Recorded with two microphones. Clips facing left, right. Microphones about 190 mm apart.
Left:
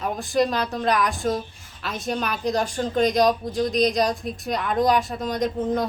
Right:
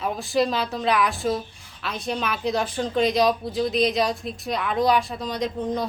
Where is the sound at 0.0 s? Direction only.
Centre (ahead or behind).